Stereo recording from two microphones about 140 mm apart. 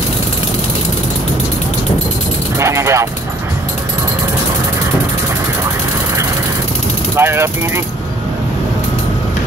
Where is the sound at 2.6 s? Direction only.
20° right (ahead or behind).